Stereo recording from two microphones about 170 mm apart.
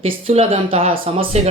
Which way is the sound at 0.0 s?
35° right (ahead or behind).